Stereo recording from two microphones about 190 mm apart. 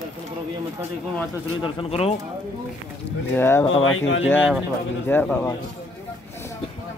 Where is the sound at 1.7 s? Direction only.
30° left (ahead or behind).